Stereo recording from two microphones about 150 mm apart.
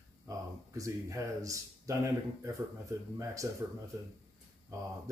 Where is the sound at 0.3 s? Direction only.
20° right (ahead or behind).